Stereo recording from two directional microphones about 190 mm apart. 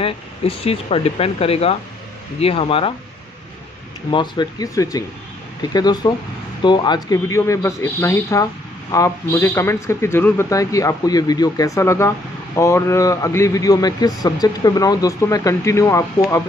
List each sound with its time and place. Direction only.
0.0 s speech: 30° left (ahead or behind)
4.1 s a man's voice: 25° left (ahead or behind)